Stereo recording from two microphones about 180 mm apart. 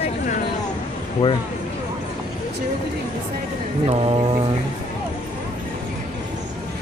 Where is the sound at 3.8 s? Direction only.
35° right (ahead or behind).